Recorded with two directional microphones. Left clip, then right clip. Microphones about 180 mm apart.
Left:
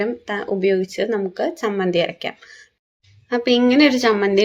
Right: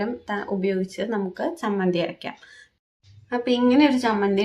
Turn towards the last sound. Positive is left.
turn(degrees=20)  # may be behind; listen again after turning